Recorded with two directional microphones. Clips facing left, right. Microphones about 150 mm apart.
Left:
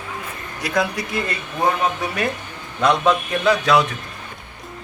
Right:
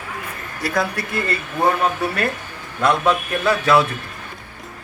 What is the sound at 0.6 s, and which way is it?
A man's voice, centre (ahead or behind).